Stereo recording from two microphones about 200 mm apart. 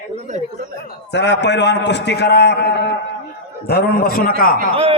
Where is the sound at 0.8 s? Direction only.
60° left (ahead or behind).